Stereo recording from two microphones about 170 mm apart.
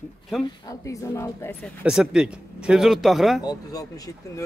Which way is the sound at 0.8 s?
15° left (ahead or behind).